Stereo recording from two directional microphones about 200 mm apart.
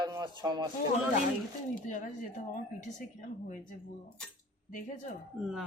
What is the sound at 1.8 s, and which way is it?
Speech, 40° left (ahead or behind).